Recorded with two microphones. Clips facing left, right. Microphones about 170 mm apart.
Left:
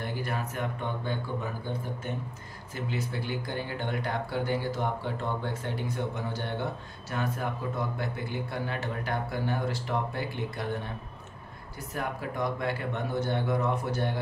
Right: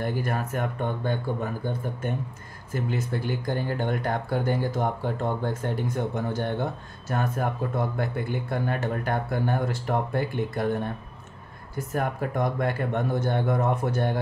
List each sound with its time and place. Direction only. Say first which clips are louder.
0.0 s speech: right 5 dB; 50° right (ahead or behind)
2.7 s speech: right 5 dB; 50° right (ahead or behind)